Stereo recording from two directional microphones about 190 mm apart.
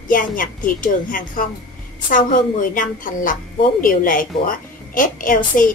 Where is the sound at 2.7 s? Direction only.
45° left (ahead or behind).